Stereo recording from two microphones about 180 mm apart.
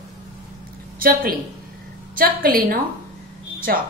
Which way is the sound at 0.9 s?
55° right (ahead or behind).